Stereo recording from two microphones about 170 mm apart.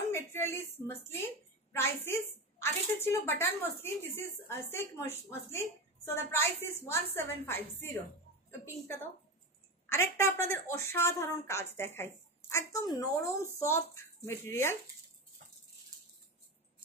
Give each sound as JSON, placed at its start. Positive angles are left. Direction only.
{"t": 0.1, "sound": "a sound", "side_deg": 15}
{"t": 0.8, "sound": "a woman's voice", "side_deg": 15}
{"t": 9.8, "sound": "a woman's voice", "side_deg": 15}